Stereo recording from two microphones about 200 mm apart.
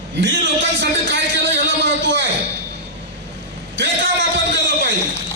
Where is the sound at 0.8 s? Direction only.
60° right (ahead or behind).